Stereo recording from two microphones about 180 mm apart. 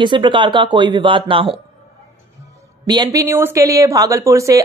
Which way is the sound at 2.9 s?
20° right (ahead or behind).